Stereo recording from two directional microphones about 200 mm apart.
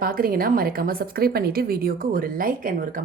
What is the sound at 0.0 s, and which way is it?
A woman's voice, 45° right (ahead or behind).